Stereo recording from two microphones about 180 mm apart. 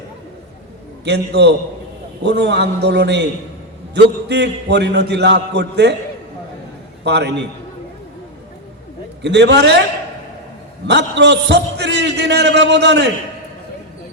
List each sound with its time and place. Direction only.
1.0 s a man's voice: 70° right (ahead or behind)
7.0 s a man's voice: 70° right (ahead or behind)
9.2 s a man's voice: 75° right (ahead or behind)
10.8 s a man's voice: 75° right (ahead or behind)